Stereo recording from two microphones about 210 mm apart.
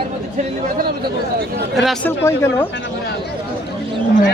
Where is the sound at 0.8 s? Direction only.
45° right (ahead or behind).